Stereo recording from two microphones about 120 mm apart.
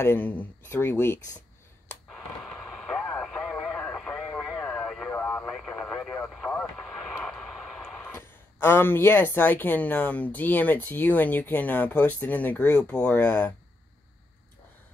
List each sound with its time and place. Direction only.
0.0 s speech: 15° left (ahead or behind)
2.0 s radio: 5° left (ahead or behind)
7.2 s vehicle: centre (ahead or behind)
8.0 s speech: 20° left (ahead or behind)